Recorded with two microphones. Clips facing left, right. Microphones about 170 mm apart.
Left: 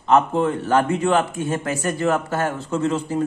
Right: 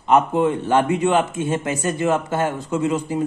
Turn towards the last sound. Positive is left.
turn(degrees=-15)  # may be behind; listen again after turning